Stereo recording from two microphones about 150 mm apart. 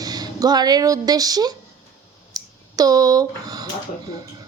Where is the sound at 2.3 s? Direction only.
25° right (ahead or behind).